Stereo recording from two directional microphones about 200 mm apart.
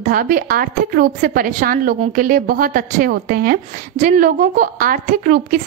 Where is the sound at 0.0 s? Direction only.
45° right (ahead or behind).